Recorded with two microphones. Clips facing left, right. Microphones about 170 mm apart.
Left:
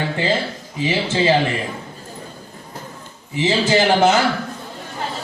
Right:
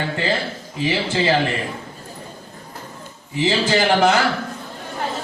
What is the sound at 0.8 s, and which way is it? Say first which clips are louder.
Speech: left 1 dB; 20° left (ahead or behind).